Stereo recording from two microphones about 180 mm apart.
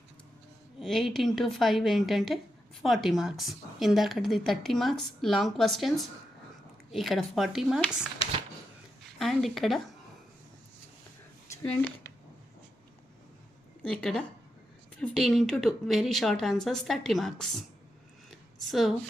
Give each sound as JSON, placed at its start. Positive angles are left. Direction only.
{"t": 0.8, "sound": "a woman's voice", "side_deg": 0}
{"t": 9.1, "sound": "speech", "side_deg": 0}
{"t": 13.8, "sound": "a woman's voice", "side_deg": 5}
{"t": 18.3, "sound": "a sound", "side_deg": 0}